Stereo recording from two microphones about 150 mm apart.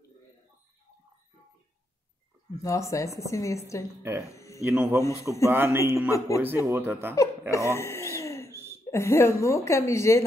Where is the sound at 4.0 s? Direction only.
15° right (ahead or behind).